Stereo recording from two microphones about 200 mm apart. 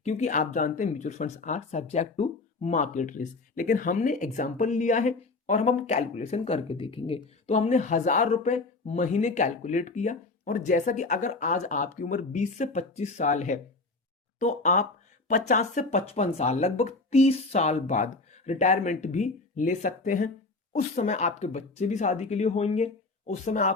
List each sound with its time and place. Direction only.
0.0 s speech: 35° left (ahead or behind)